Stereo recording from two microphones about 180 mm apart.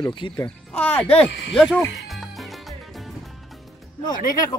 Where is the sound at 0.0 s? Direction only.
25° left (ahead or behind).